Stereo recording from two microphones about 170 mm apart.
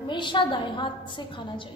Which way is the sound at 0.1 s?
30° left (ahead or behind).